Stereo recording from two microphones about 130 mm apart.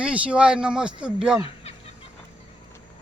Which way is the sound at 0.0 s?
10° right (ahead or behind).